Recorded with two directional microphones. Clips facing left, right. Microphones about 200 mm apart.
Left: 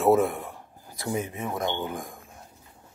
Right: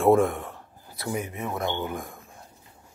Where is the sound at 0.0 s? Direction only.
5° left (ahead or behind).